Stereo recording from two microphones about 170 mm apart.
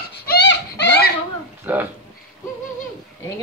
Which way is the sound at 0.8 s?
75° left (ahead or behind).